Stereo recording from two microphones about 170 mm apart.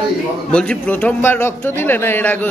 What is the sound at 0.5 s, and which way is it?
Speech, 5° left (ahead or behind).